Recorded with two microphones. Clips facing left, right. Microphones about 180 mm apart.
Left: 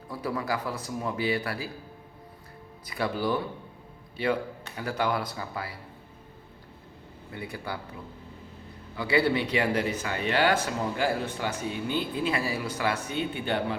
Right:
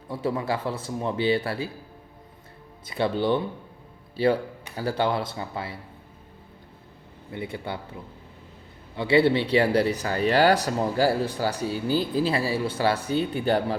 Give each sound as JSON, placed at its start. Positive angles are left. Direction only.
{"t": 0.1, "sound": "speech", "side_deg": -25}
{"t": 2.8, "sound": "speech", "side_deg": -25}
{"t": 7.3, "sound": "speech", "side_deg": -25}
{"t": 9.0, "sound": "speech", "side_deg": -25}